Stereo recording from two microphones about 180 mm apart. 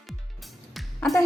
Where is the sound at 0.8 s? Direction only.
Centre (ahead or behind).